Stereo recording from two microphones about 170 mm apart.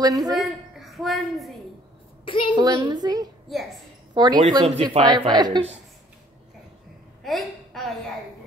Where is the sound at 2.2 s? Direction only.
30° left (ahead or behind).